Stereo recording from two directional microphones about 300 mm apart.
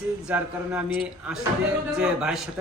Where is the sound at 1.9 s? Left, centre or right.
Centre.